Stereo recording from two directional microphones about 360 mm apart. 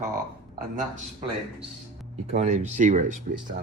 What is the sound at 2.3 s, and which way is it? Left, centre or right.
Speech, centre.